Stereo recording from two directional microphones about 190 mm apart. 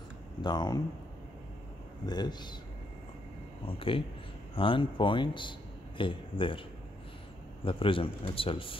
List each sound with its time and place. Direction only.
0.4 s speech: 20° left (ahead or behind)
2.0 s a man's voice: 20° left (ahead or behind)
3.6 s a man's voice: 30° left (ahead or behind)
7.6 s a man's voice: 30° left (ahead or behind)